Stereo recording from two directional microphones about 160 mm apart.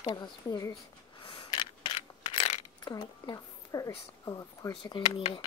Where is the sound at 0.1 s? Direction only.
25° left (ahead or behind).